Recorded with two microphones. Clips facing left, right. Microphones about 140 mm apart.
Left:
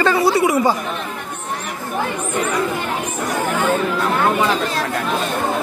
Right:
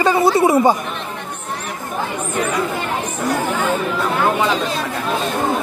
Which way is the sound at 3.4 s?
10° right (ahead or behind).